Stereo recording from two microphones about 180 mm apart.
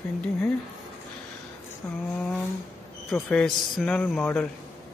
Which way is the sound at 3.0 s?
5° left (ahead or behind).